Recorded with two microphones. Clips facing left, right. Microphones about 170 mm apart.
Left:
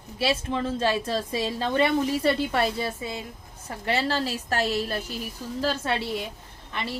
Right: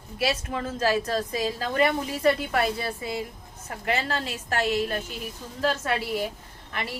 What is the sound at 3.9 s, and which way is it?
A woman's voice, 35° left (ahead or behind).